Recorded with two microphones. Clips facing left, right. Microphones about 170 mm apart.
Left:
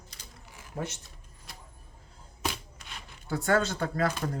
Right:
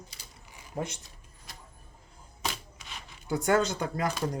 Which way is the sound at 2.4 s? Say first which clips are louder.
Left 2 dB; centre (ahead or behind).